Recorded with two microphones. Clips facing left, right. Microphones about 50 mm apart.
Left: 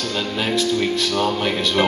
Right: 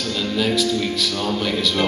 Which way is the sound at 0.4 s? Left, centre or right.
Left.